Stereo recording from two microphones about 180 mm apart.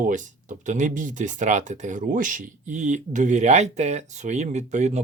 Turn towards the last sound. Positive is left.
turn(degrees=-40)  # may be behind; listen again after turning